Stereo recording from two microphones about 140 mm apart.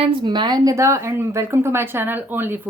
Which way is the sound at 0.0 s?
30° right (ahead or behind).